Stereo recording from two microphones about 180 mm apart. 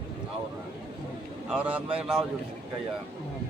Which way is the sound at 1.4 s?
5° right (ahead or behind).